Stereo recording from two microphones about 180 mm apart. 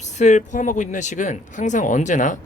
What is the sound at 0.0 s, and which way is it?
Speech, 40° left (ahead or behind).